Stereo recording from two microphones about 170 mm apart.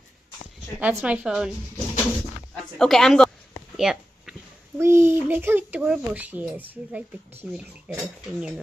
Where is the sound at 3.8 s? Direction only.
5° right (ahead or behind).